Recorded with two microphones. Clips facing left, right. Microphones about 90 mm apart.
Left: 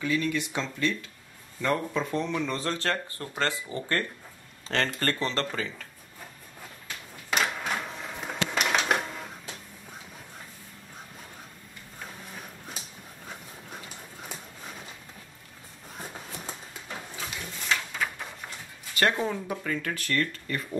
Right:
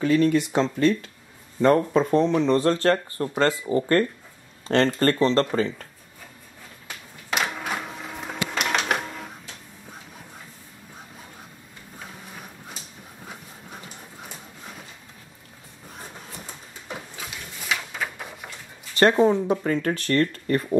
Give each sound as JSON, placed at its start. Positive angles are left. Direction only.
{"t": 0.0, "sound": "speech", "side_deg": -40}
{"t": 7.2, "sound": "printer", "side_deg": -5}
{"t": 12.0, "sound": "vehicle", "side_deg": -5}
{"t": 17.2, "sound": "a sound", "side_deg": -5}
{"t": 18.9, "sound": "speech", "side_deg": -30}